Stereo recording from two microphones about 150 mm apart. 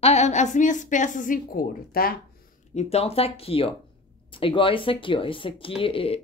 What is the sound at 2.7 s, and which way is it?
Speech, 45° left (ahead or behind).